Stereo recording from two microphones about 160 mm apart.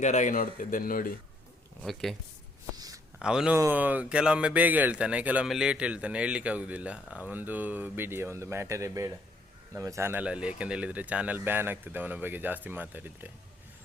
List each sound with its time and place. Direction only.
0.0 s speech: 50° left (ahead or behind)
1.8 s speech: centre (ahead or behind)
2.7 s a sound: 25° right (ahead or behind)
3.2 s speech: 5° right (ahead or behind)